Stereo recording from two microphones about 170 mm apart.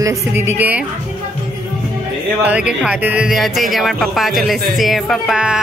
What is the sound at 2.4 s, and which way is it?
Speech, 5° right (ahead or behind).